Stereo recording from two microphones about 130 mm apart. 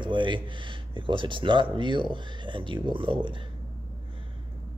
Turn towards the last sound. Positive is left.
turn(degrees=-40)  # may be behind; listen again after turning